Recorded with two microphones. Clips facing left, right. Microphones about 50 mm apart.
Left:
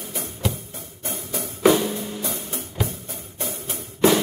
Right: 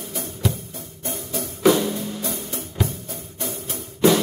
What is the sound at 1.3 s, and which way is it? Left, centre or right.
Music, left.